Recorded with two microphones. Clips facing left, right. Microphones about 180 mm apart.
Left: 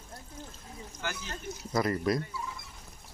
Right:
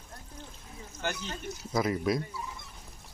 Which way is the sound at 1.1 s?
Centre (ahead or behind).